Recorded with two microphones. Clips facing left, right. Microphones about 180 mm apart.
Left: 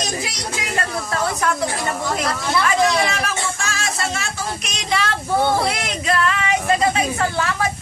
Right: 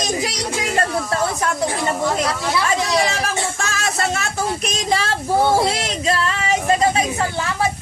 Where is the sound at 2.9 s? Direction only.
30° right (ahead or behind).